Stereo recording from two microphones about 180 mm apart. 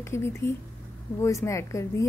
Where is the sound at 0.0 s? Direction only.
15° left (ahead or behind).